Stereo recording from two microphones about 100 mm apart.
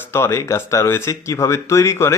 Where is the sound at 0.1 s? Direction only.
30° left (ahead or behind).